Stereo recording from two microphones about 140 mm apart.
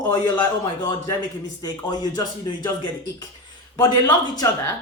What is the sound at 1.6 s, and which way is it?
Speech, 30° left (ahead or behind).